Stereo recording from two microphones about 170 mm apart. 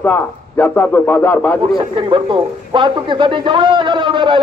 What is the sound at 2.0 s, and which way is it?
A man's voice, 30° right (ahead or behind).